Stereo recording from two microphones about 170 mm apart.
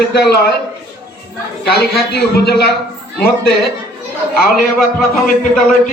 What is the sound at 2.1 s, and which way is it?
Speech, 70° left (ahead or behind).